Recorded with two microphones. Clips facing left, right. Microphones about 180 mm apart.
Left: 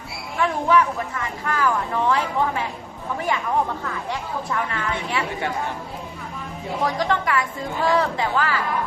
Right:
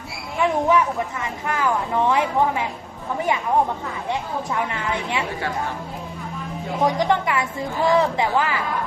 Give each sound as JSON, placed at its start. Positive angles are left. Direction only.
{"t": 0.3, "sound": "speech", "side_deg": -20}
{"t": 4.1, "sound": "speech", "side_deg": -20}
{"t": 6.8, "sound": "speech", "side_deg": -20}